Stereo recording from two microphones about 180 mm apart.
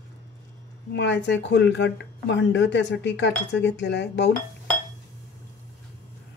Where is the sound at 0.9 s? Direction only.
75° left (ahead or behind).